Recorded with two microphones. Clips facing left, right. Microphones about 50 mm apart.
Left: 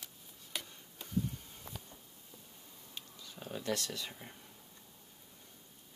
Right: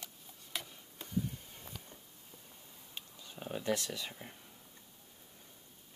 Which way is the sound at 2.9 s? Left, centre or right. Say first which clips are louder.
Right 1 dB; right.